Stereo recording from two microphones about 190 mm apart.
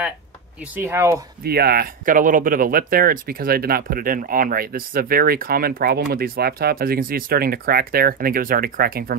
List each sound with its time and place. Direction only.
0.7 s speech: 15° right (ahead or behind)
1.4 s speech: 55° right (ahead or behind)